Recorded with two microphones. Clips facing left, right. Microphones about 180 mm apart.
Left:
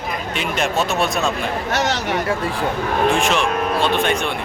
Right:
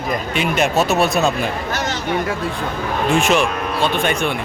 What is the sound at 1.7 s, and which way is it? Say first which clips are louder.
Speech: left 3 dB; 75° left (ahead or behind).